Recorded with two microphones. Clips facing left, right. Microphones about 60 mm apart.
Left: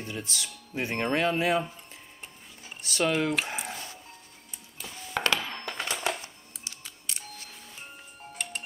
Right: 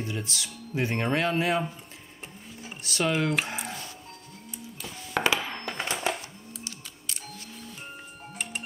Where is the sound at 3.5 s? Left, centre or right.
Centre.